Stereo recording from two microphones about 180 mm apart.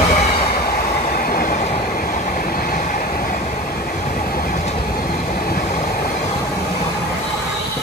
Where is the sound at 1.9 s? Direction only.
50° left (ahead or behind).